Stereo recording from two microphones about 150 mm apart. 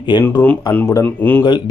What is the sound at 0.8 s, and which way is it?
Speech, 20° left (ahead or behind).